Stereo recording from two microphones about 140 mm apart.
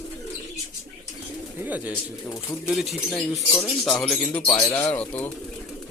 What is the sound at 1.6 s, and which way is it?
Speech, 10° right (ahead or behind).